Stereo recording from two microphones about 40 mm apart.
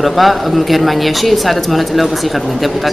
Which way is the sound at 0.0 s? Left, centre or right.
Centre.